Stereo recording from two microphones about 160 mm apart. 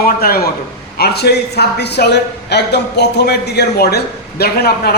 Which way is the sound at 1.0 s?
85° left.